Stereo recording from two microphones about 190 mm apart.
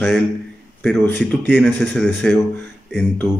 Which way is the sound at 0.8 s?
10° left (ahead or behind).